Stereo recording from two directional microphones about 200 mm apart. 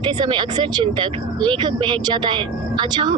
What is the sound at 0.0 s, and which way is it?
Speech, 25° right (ahead or behind).